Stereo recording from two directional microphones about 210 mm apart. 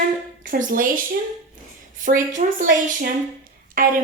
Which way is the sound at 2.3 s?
35° right (ahead or behind).